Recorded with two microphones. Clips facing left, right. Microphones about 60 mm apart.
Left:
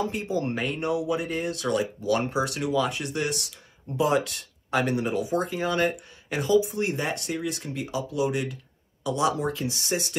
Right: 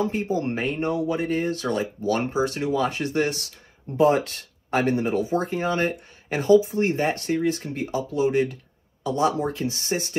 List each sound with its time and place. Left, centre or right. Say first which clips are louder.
0.1 s speech: right 3 dB; right